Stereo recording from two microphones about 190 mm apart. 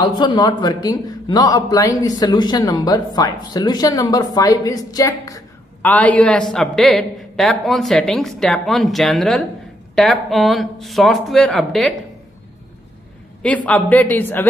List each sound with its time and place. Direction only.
0.0 s a man's voice: 25° left (ahead or behind); by 12.0 s centre (ahead or behind)
13.7 s a man's voice: 10° left (ahead or behind)